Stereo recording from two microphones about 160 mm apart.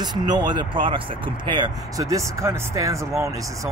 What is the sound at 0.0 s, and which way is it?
Speech, 25° right (ahead or behind).